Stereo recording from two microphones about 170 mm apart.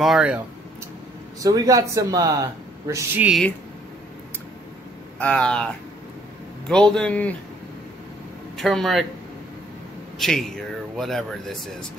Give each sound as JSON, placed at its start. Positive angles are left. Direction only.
{"t": 0.0, "sound": "speech", "side_deg": -5}
{"t": 1.4, "sound": "speech", "side_deg": -20}
{"t": 5.2, "sound": "a man's voice", "side_deg": 5}
{"t": 6.7, "sound": "a man's voice", "side_deg": 5}
{"t": 8.5, "sound": "speech", "side_deg": 0}
{"t": 10.1, "sound": "speech", "side_deg": 0}